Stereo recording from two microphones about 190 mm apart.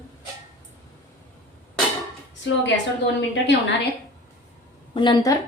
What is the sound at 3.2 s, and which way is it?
Speech, 70° left (ahead or behind).